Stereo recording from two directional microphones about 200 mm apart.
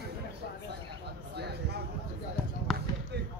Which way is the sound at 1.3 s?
55° right (ahead or behind).